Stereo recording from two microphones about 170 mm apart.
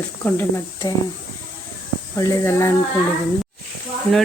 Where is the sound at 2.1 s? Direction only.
15° left (ahead or behind).